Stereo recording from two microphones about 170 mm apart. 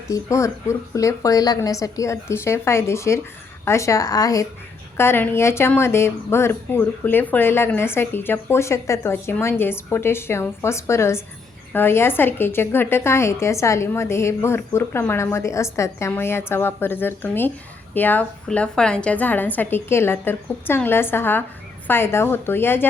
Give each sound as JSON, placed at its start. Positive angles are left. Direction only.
{"t": 0.1, "sound": "speech", "side_deg": 15}